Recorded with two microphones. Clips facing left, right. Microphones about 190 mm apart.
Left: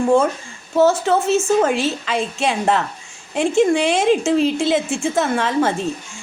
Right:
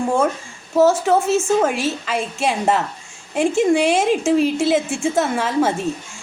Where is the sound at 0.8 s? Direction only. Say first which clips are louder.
Right 1 dB; 10° right (ahead or behind).